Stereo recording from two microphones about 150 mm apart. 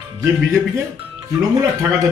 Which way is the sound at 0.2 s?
20° right (ahead or behind).